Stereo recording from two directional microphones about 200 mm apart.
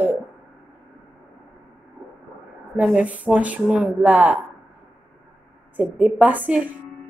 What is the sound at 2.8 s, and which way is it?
Speech, 5° right (ahead or behind).